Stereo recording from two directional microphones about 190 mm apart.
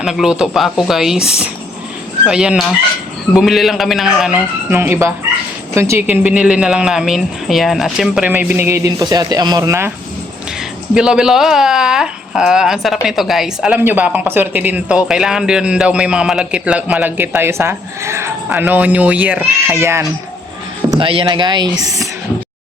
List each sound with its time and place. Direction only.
0.0 s speech: centre (ahead or behind)
10.9 s speech: 5° right (ahead or behind)
20.9 s speech: 25° right (ahead or behind)